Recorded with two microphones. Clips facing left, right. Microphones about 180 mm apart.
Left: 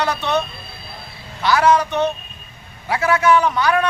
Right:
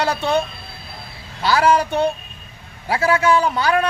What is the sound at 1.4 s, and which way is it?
A man's voice, 30° right (ahead or behind).